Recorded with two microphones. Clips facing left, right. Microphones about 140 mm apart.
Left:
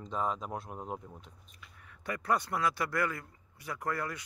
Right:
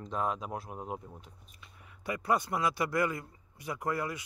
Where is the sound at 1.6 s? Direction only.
15° right (ahead or behind).